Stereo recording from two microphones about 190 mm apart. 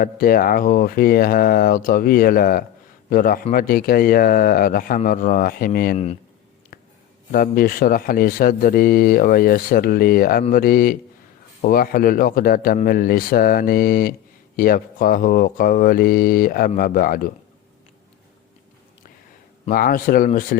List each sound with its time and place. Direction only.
0.0 s speech: 50° left (ahead or behind)
6.7 s a sound: 45° left (ahead or behind)
7.3 s speech: 50° left (ahead or behind)
19.7 s speech: 50° left (ahead or behind)